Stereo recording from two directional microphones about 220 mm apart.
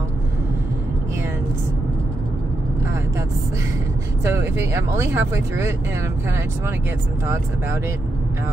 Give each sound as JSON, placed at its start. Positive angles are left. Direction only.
{"t": 4.2, "sound": "speech", "side_deg": -10}